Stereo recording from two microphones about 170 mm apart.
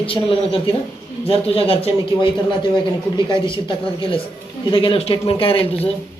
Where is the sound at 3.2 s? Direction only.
30° left (ahead or behind).